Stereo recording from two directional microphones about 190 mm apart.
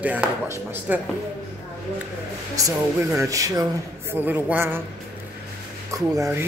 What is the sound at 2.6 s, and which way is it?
A man's voice, 15° right (ahead or behind).